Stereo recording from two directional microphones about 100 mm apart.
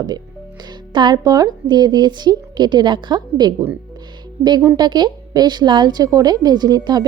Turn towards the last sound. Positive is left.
turn(degrees=-45)  # may be behind; listen again after turning